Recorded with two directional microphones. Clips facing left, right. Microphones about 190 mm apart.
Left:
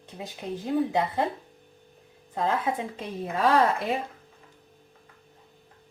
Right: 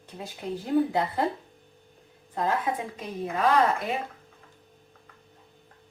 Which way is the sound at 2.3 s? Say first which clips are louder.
Left 1 dB; 20° left (ahead or behind).